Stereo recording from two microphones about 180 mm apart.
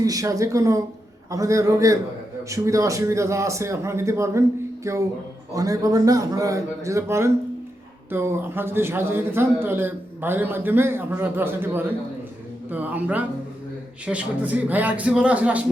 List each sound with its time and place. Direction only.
0.0 s a man's voice: 20° right (ahead or behind)